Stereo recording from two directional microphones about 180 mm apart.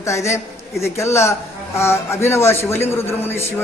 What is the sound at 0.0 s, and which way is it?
A man's voice, 15° left (ahead or behind).